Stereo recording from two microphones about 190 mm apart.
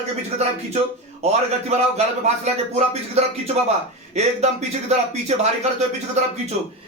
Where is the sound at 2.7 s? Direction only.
35° right (ahead or behind).